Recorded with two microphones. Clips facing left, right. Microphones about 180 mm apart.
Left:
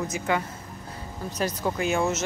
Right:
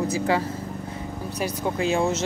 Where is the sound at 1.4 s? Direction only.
10° right (ahead or behind).